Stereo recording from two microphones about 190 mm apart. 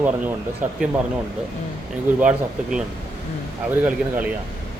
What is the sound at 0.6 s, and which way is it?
Speech, 40° right (ahead or behind).